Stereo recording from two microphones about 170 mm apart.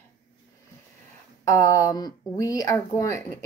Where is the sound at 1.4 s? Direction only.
20° left (ahead or behind).